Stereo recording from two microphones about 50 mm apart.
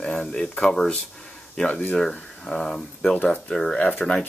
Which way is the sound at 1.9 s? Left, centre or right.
Centre.